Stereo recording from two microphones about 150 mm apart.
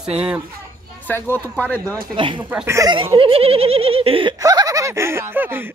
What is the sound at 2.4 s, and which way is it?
Speech, 10° right (ahead or behind).